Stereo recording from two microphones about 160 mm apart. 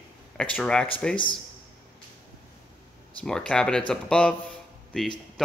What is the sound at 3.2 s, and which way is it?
Speech, 5° left (ahead or behind).